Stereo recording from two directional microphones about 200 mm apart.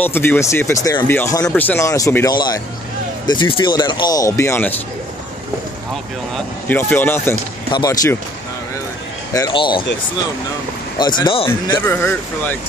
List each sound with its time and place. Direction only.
0.0 s speech: 10° left (ahead or behind)
6.3 s speech: 10° left (ahead or behind)
9.3 s speech: 20° left (ahead or behind)
11.0 s speech: 20° left (ahead or behind)